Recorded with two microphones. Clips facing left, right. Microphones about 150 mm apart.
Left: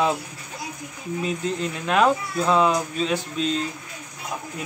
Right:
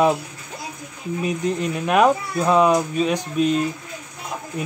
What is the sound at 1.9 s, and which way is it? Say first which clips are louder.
Speech: right 3 dB; 15° right (ahead or behind).